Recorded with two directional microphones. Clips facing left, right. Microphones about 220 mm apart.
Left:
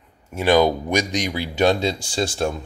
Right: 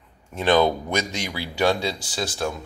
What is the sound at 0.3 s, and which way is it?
Speech, 10° left (ahead or behind).